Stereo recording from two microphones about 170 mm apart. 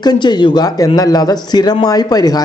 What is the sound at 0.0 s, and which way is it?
A woman's voice, 25° left (ahead or behind).